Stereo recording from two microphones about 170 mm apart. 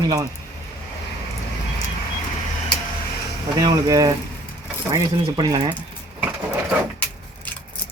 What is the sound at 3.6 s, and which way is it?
Speech, 20° right (ahead or behind).